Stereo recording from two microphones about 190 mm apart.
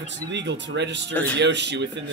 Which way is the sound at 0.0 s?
65° right (ahead or behind).